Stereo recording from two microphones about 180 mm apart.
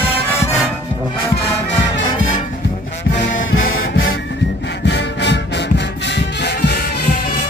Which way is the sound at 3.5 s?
90° left.